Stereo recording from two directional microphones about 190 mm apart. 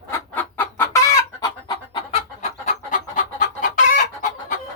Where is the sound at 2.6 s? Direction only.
40° left (ahead or behind).